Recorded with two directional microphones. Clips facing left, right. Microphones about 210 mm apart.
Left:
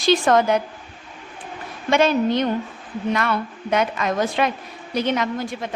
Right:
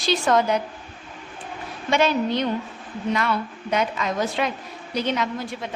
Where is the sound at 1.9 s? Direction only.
50° left (ahead or behind).